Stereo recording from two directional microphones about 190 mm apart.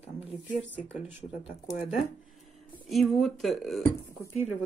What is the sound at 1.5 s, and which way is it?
Speech, 30° left (ahead or behind).